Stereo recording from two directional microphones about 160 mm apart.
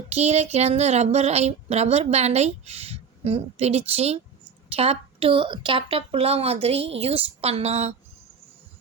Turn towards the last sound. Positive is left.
turn(degrees=-40)  # may be behind; listen again after turning